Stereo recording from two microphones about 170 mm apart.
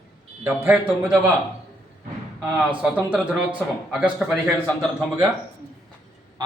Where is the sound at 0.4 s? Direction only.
10° right (ahead or behind).